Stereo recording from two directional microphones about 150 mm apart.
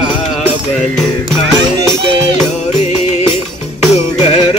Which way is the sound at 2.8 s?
50° left (ahead or behind).